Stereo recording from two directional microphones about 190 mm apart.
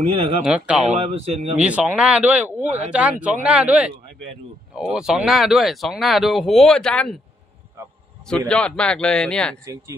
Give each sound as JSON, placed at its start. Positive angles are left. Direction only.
{"t": 0.1, "sound": "speech", "side_deg": -30}
{"t": 0.4, "sound": "speech", "side_deg": -5}
{"t": 0.8, "sound": "speech", "side_deg": -35}
{"t": 1.6, "sound": "speech", "side_deg": -5}
{"t": 8.3, "sound": "speech", "side_deg": 5}